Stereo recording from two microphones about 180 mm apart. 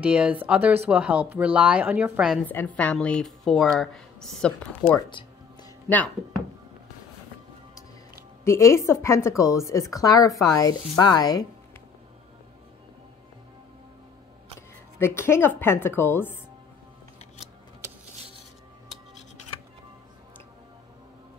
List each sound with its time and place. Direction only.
0.0 s a woman's voice: 5° right (ahead or behind)
2.4 s speech: 10° left (ahead or behind)
8.5 s speech: 15° left (ahead or behind)
15.0 s speech: 15° left (ahead or behind)